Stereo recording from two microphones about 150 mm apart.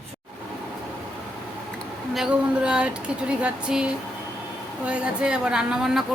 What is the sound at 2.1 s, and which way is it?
Speech, 5° right (ahead or behind).